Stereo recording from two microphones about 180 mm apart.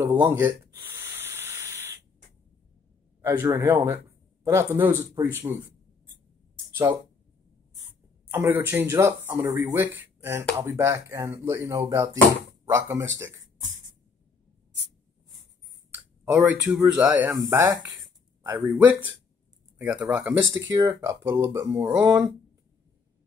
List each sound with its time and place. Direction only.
0.0 s a sound: 10° right (ahead or behind)
3.2 s speech: 15° right (ahead or behind)
6.7 s a sound: 15° right (ahead or behind)
8.3 s speech: 15° right (ahead or behind)
15.9 s speech: 10° right (ahead or behind)
20.0 s speech: 5° right (ahead or behind)